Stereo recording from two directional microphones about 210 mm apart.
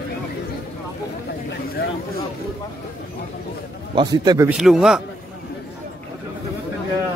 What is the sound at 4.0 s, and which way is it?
Speech, 20° right (ahead or behind).